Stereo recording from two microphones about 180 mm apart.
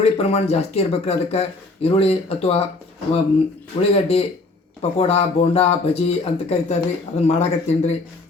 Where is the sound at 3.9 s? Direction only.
35° left (ahead or behind).